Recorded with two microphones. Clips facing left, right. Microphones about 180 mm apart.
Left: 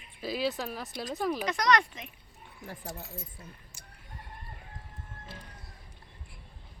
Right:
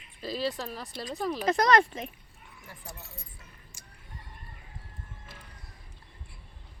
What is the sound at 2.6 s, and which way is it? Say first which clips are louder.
Speech: left 8 dB; 40° left (ahead or behind).